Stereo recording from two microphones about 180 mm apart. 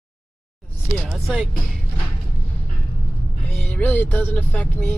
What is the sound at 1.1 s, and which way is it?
Speech, 5° right (ahead or behind).